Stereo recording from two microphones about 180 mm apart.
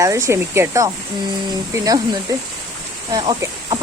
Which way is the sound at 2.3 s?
20° right (ahead or behind).